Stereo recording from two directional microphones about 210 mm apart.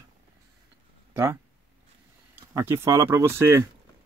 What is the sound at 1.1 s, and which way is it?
Speech, 10° right (ahead or behind).